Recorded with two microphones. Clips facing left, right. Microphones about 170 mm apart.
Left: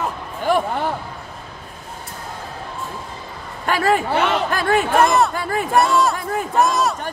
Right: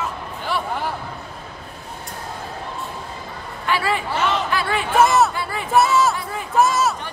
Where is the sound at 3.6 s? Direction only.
45° left (ahead or behind).